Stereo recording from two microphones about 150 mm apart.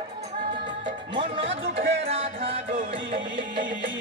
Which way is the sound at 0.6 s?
35° right (ahead or behind).